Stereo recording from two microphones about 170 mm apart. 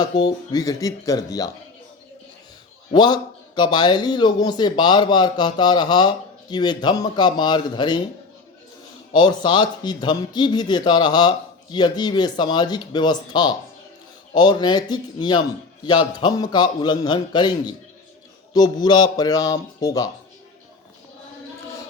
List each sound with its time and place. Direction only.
0.0 s speech: 20° left (ahead or behind)
2.9 s speech: 25° left (ahead or behind)
9.1 s speech: 25° left (ahead or behind)